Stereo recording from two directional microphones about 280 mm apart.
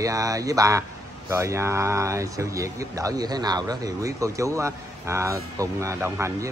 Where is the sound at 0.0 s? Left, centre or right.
Centre.